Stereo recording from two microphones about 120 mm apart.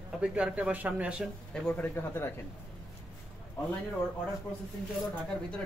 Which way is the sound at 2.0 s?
20° left (ahead or behind).